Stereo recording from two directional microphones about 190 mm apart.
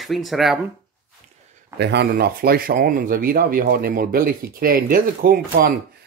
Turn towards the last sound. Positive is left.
turn(degrees=-50)  # may be behind; listen again after turning